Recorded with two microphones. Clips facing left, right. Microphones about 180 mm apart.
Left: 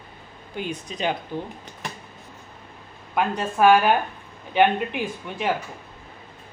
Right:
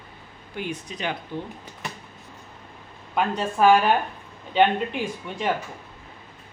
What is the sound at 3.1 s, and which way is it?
Speech, 5° left (ahead or behind).